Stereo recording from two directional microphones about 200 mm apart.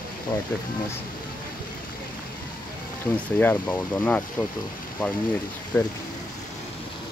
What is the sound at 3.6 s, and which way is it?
Speech, 5° left (ahead or behind).